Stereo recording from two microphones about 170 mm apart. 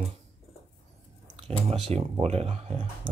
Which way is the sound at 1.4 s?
35° right (ahead or behind).